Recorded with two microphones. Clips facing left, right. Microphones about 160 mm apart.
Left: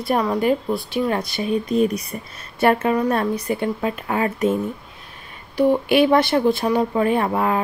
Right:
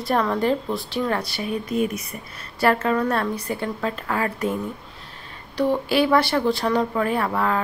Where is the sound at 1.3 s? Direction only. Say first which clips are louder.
Left 5 dB; 25° left (ahead or behind).